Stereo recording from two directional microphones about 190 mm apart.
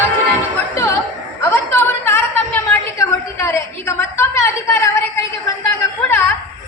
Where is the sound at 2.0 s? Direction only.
10° left (ahead or behind).